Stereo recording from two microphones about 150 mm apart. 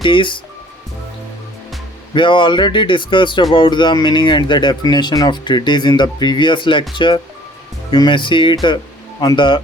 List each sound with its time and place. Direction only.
0.0 s speech: 35° left (ahead or behind)
2.1 s speech: 35° left (ahead or behind)